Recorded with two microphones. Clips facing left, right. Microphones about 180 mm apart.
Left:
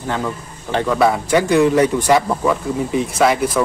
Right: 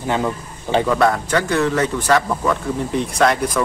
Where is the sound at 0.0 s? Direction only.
15° right (ahead or behind).